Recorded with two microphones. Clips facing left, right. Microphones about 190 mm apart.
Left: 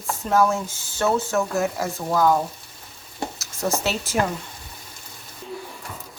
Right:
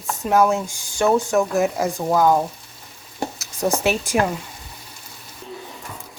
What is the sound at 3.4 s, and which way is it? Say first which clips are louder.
Speech: right 4 dB; 15° right (ahead or behind).